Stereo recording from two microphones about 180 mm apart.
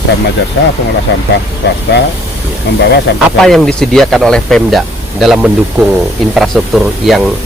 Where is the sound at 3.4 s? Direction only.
5° left (ahead or behind).